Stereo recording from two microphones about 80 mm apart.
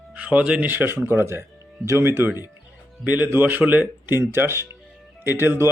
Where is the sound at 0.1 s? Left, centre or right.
Centre.